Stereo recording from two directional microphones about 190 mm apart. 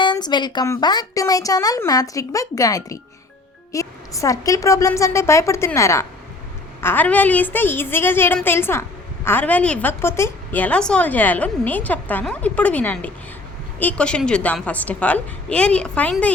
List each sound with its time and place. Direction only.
0.0 s a woman's voice: 25° left (ahead or behind); by 16.3 s 5° left (ahead or behind)